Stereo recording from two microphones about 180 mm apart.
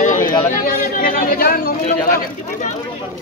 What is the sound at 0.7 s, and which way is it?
Speech, 50° left (ahead or behind).